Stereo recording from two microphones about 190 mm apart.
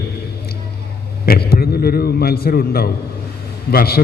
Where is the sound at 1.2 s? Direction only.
55° left (ahead or behind).